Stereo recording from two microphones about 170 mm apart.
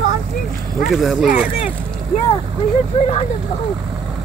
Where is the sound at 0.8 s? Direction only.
Centre (ahead or behind).